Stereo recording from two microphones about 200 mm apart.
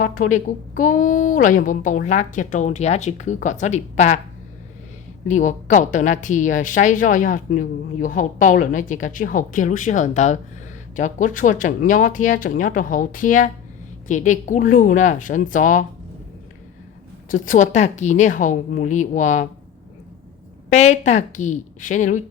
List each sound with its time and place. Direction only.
0.0 s a woman's voice: 40° left (ahead or behind)
5.3 s a woman's voice: 40° left (ahead or behind)
17.2 s a woman's voice: 40° left (ahead or behind)
20.7 s a woman's voice: 35° left (ahead or behind)